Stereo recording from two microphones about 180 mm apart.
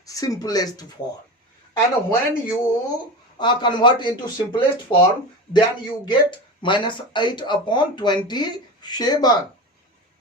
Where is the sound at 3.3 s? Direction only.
25° left (ahead or behind).